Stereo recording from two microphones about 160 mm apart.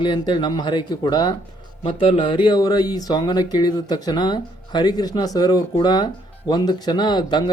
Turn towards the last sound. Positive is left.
turn(degrees=25)  # may be behind; listen again after turning